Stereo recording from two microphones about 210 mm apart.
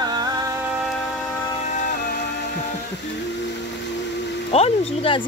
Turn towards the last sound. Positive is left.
turn(degrees=25)  # may be behind; listen again after turning